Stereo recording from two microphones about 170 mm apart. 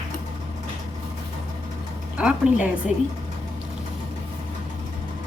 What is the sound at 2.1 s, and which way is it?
Speech, 5° right (ahead or behind).